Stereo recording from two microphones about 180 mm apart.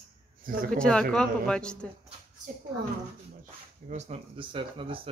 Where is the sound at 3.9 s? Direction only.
35° right (ahead or behind).